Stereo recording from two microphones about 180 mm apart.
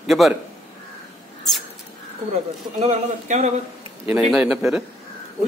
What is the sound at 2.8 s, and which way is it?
Speech, 35° right (ahead or behind).